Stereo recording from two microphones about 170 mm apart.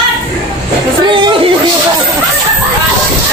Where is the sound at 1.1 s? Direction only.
30° right (ahead or behind).